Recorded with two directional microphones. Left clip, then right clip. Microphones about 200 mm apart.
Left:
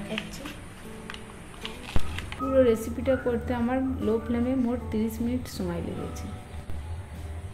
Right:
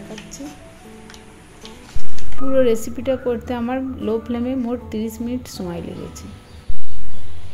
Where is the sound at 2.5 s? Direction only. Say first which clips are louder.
Right 5 dB; 30° right (ahead or behind).